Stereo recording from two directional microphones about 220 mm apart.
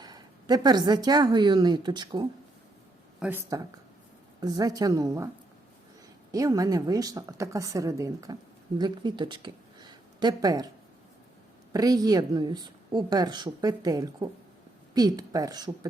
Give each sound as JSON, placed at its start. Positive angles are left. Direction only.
{"t": 0.0, "sound": "a woman's voice", "side_deg": -20}
{"t": 3.2, "sound": "speech", "side_deg": -10}
{"t": 6.3, "sound": "speech", "side_deg": -15}
{"t": 11.7, "sound": "speech", "side_deg": -15}